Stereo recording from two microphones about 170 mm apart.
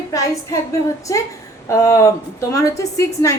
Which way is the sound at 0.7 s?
20° left (ahead or behind).